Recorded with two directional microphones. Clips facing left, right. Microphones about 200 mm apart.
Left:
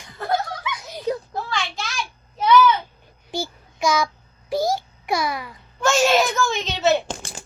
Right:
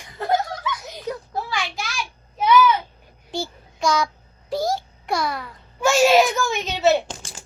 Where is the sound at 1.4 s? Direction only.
10° right (ahead or behind).